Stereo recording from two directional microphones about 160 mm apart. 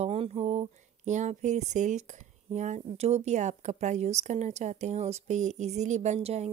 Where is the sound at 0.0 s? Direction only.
40° right (ahead or behind).